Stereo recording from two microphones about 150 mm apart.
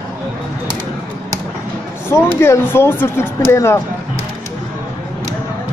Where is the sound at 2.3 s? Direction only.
15° left (ahead or behind).